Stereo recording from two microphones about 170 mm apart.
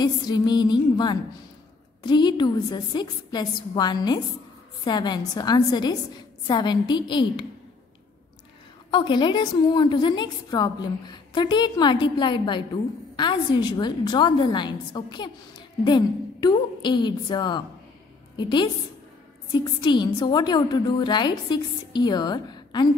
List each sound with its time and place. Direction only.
0.0 s a woman's voice: 25° left (ahead or behind)
8.9 s a woman's voice: 25° left (ahead or behind)